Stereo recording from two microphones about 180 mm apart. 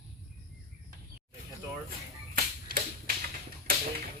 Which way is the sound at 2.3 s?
55° right (ahead or behind).